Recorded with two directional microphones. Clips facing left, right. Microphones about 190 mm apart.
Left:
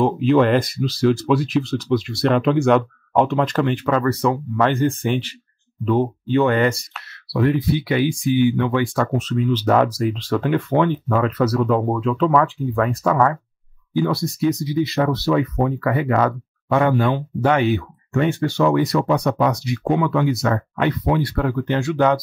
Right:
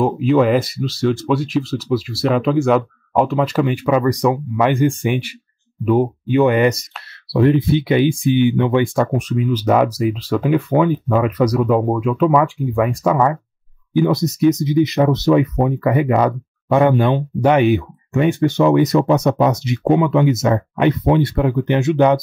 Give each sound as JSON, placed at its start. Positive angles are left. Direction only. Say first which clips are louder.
{"t": 0.0, "sound": "speech", "louder": "right 1 dB", "side_deg": -5}